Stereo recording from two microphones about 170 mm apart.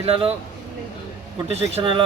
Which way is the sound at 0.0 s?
35° right (ahead or behind).